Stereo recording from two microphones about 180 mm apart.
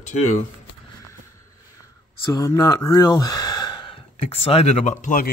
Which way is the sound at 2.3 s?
20° left (ahead or behind).